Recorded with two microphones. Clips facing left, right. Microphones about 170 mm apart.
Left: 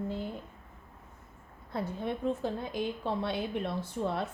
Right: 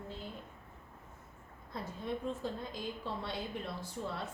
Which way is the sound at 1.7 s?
65° left (ahead or behind).